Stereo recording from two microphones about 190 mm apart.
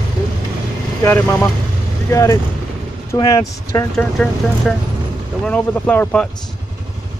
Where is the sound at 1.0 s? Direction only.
15° left (ahead or behind).